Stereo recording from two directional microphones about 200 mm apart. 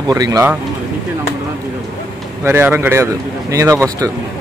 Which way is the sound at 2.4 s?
10° right (ahead or behind).